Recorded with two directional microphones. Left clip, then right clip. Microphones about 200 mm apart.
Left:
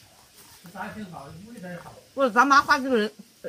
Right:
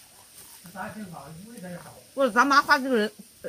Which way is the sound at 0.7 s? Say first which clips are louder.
Left 1 dB; 50° left (ahead or behind).